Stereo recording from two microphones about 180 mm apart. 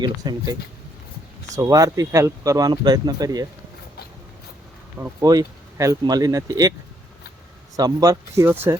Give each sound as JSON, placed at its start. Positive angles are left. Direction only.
{"t": 0.0, "sound": "speech", "side_deg": -25}
{"t": 1.5, "sound": "speech", "side_deg": -20}
{"t": 4.9, "sound": "speech", "side_deg": -15}
{"t": 7.8, "sound": "speech", "side_deg": -20}